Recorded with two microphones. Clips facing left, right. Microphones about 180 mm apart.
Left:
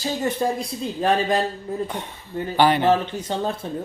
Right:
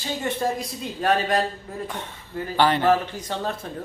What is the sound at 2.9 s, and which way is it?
Speech, 25° left (ahead or behind).